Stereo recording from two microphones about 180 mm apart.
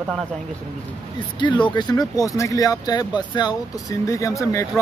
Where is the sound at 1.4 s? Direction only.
25° left (ahead or behind).